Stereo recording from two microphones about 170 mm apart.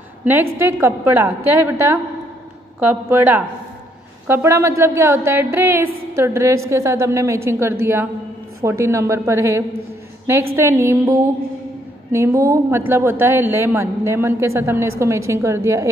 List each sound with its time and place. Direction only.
0.2 s a woman's voice: 10° right (ahead or behind)
12.1 s a woman's voice: 15° right (ahead or behind)